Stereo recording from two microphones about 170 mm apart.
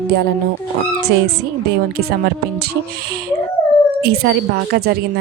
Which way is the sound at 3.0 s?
65° right (ahead or behind).